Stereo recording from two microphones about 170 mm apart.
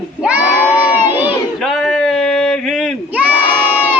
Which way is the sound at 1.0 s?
10° right (ahead or behind).